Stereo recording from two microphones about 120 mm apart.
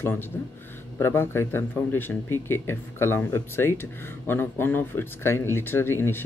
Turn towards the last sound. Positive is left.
turn(degrees=20)  # may be behind; listen again after turning